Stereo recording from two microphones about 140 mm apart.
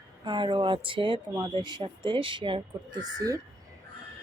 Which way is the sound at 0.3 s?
35° right (ahead or behind).